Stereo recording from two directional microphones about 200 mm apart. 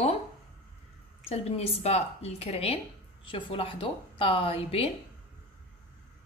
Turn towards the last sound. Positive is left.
turn(degrees=30)  # may be behind; listen again after turning